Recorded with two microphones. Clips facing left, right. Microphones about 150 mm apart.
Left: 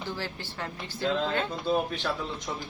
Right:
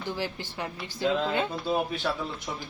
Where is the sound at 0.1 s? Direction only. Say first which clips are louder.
Right 6 dB; 15° right (ahead or behind).